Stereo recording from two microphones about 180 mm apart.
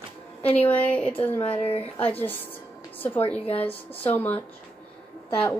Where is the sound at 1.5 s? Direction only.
30° left (ahead or behind).